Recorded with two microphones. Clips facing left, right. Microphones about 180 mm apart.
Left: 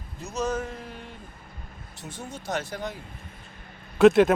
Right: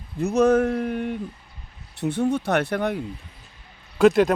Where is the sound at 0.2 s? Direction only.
60° right (ahead or behind).